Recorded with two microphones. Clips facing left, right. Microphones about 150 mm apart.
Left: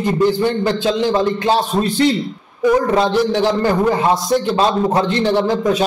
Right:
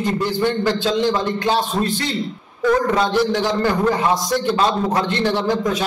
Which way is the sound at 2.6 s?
15° left (ahead or behind).